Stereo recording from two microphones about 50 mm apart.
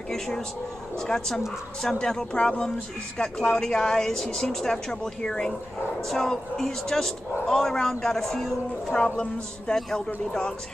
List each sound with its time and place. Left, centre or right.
0.9 s speech: centre
8.9 s speech: left